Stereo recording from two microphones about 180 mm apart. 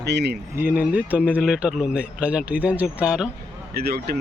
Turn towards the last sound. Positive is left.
turn(degrees=-60)  # may be behind; listen again after turning